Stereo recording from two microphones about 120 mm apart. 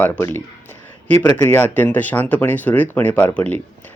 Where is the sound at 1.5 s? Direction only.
15° left (ahead or behind).